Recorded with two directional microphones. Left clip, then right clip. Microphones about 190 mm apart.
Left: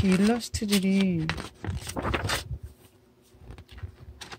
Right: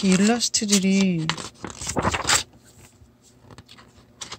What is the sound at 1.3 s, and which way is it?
Tearing, 25° left (ahead or behind).